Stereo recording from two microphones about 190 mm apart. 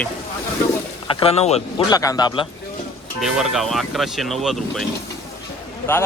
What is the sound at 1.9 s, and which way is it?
Speech, 20° left (ahead or behind).